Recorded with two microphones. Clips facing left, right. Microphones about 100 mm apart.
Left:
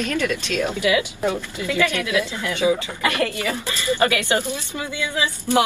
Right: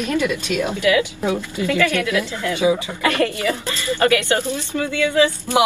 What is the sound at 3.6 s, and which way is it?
Speech, 15° left (ahead or behind).